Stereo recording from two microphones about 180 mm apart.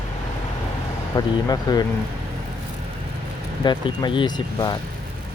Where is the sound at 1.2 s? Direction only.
20° left (ahead or behind).